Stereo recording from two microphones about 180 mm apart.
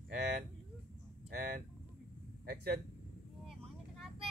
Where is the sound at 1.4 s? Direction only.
55° right (ahead or behind).